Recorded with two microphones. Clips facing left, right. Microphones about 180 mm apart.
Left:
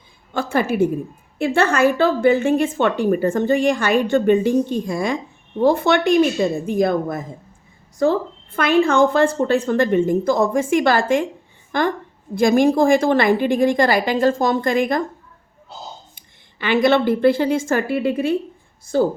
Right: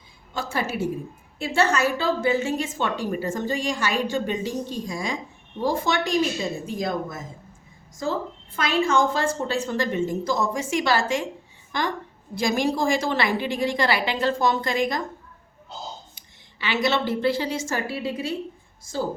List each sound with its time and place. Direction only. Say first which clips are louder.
0.3 s a woman's voice: left 9 dB; 55° left (ahead or behind)
16.1 s a woman's voice: left 4 dB; 50° left (ahead or behind)